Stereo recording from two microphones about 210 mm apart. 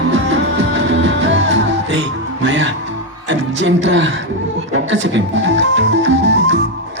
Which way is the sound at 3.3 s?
60° right (ahead or behind).